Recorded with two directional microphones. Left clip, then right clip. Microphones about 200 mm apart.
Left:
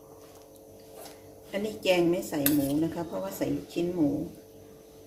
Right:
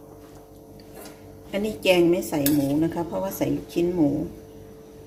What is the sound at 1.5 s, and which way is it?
Speech, 15° right (ahead or behind).